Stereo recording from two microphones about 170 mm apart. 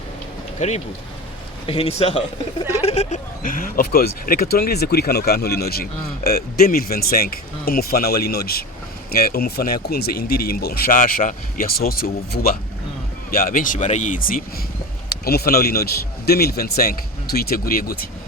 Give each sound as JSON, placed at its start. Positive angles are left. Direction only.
{"t": 0.6, "sound": "speech", "side_deg": 45}
{"t": 1.6, "sound": "speech", "side_deg": 35}